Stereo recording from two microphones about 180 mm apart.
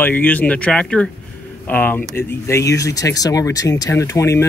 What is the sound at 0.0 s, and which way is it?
Speech, 10° left (ahead or behind).